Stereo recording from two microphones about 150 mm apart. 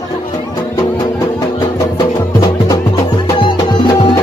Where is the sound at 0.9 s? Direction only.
25° left (ahead or behind).